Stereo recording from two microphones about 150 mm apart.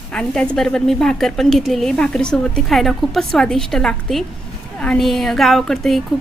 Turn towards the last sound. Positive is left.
turn(degrees=0)  # may be behind; listen again after turning